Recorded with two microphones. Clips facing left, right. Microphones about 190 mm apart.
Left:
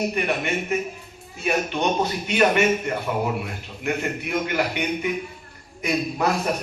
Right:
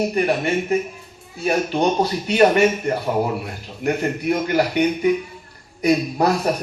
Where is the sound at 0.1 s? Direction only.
35° right (ahead or behind).